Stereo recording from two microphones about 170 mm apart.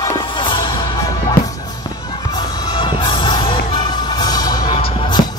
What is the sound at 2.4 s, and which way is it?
Music, 25° left (ahead or behind).